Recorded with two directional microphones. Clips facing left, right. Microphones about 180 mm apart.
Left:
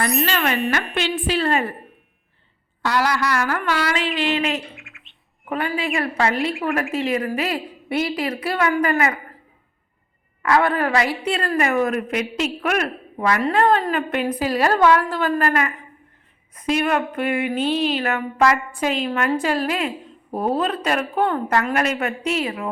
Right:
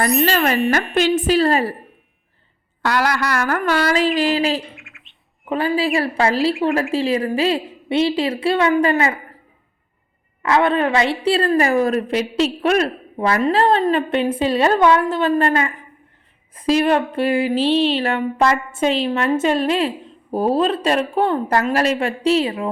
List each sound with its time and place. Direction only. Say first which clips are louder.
0.3 s a woman's voice: right 4 dB; 40° right (ahead or behind)
2.8 s a sound: right 1 dB; 65° right (ahead or behind); by 4.6 s 35° right (ahead or behind)
4.7 s bird: even; centre (ahead or behind)
5.5 s a woman's voice: right 5 dB; 30° right (ahead or behind)
6.5 s speech: right 5 dB; centre (ahead or behind)
6.9 s a woman's voice: right 3 dB; 30° right (ahead or behind)
10.4 s a woman's voice: right 2 dB; 20° right (ahead or behind)